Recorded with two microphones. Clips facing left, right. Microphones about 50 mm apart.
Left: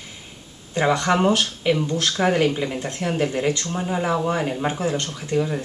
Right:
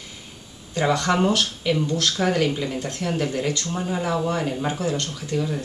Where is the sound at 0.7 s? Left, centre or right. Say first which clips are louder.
Left 2 dB; left.